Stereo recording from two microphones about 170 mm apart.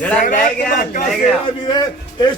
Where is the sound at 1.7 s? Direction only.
25° left (ahead or behind).